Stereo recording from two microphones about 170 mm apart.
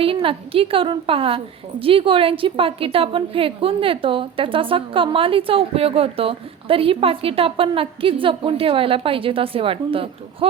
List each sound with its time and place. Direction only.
0.0 s a woman's voice: 30° right (ahead or behind)